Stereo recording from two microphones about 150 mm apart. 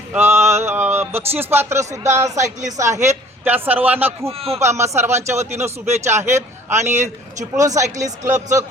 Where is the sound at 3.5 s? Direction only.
10° right (ahead or behind).